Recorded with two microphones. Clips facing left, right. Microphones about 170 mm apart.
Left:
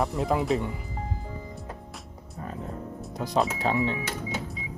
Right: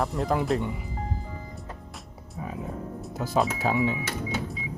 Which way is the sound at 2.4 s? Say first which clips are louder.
Right 2 dB; 5° right (ahead or behind).